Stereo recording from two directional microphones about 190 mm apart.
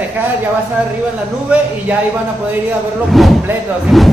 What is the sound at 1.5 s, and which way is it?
Speech, 5° right (ahead or behind).